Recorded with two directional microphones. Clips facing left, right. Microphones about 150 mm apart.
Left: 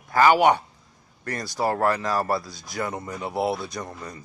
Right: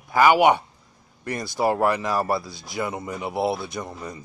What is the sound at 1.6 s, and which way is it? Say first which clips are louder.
Speech: right 2 dB; 15° right (ahead or behind).